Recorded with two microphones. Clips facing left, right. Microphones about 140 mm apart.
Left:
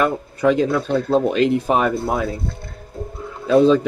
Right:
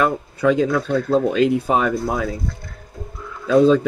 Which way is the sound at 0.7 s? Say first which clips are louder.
Even; 25° left (ahead or behind).